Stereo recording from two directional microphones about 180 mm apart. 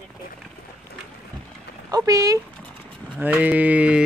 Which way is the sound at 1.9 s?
20° right (ahead or behind).